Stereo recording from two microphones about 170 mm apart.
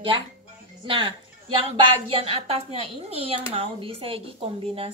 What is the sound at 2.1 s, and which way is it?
Speech, 35° right (ahead or behind).